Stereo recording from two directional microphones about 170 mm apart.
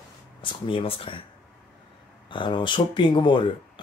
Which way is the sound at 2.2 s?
30° left (ahead or behind).